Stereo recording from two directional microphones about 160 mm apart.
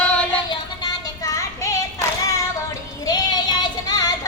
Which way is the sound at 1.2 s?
20° left (ahead or behind).